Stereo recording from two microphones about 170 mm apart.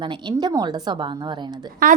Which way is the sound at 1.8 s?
50° right (ahead or behind).